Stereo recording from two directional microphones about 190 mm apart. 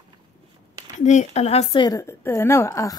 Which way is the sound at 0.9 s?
40° left (ahead or behind).